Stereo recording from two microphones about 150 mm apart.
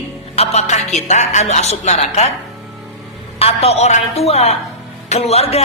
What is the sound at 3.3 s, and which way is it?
Speech, 45° left (ahead or behind).